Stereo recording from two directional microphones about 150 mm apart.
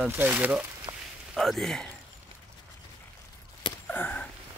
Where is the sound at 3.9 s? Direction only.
10° left (ahead or behind).